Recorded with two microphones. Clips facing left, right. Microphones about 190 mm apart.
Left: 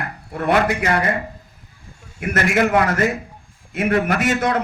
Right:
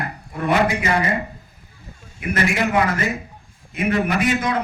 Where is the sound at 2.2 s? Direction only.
45° left (ahead or behind).